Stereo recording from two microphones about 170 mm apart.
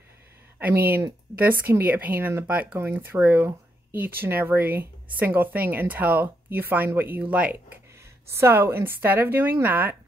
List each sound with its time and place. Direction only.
0.6 s speech: 10° right (ahead or behind)